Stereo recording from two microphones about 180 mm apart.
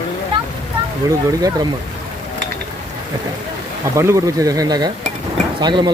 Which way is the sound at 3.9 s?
15° right (ahead or behind).